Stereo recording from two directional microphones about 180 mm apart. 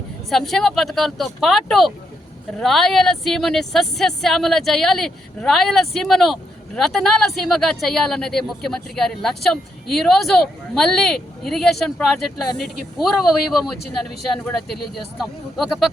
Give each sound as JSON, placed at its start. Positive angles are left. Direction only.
{"t": 0.3, "sound": "speech", "side_deg": 0}